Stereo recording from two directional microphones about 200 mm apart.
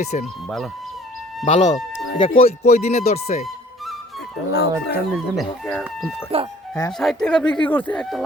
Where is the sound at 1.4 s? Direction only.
35° left (ahead or behind).